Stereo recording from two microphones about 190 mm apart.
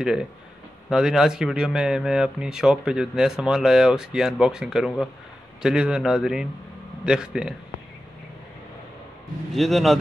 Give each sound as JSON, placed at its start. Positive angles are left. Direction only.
{"t": 0.0, "sound": "speech", "side_deg": -5}
{"t": 9.5, "sound": "speech", "side_deg": 0}